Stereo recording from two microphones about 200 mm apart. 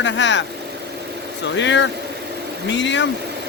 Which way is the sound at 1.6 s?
65° left (ahead or behind).